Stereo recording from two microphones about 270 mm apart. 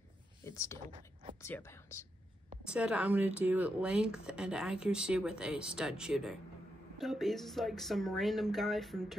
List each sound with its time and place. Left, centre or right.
0.4 s speech: centre
0.8 s speech: centre
1.4 s speech: centre
2.6 s speech: centre